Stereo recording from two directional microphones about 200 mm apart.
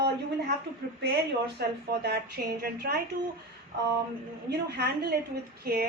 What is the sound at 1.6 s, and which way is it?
A woman's voice, 50° right (ahead or behind).